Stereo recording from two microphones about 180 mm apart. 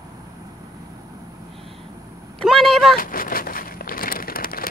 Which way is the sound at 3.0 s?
55° left (ahead or behind).